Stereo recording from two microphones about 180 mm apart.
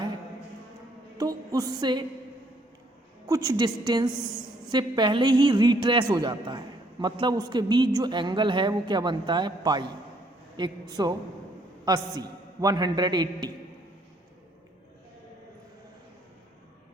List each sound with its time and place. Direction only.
1.2 s a woman's voice: 20° right (ahead or behind)
3.2 s a woman's voice: 20° right (ahead or behind)